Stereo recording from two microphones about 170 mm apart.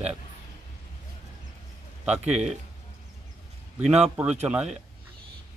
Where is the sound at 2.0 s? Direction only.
5° right (ahead or behind).